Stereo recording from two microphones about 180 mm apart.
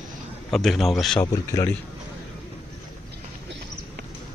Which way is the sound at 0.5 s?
Centre (ahead or behind).